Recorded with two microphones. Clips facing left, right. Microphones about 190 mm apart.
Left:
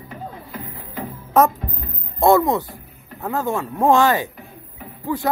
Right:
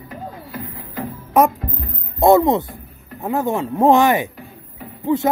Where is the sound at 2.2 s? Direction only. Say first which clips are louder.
Right 3 dB; 20° right (ahead or behind).